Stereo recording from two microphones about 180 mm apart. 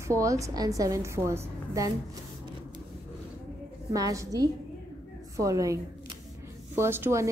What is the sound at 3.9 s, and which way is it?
A woman's voice, 20° right (ahead or behind).